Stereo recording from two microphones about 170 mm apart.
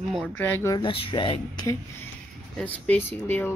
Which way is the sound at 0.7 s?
30° left (ahead or behind).